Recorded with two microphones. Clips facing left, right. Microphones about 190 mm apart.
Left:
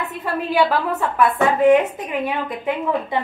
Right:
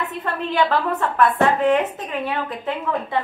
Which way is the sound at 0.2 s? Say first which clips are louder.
Left 3 dB; 10° left (ahead or behind).